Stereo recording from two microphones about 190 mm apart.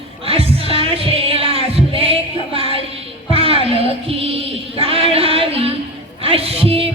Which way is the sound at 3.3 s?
30° right (ahead or behind).